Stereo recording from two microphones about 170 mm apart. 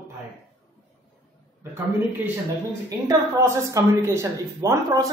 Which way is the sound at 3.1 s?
20° right (ahead or behind).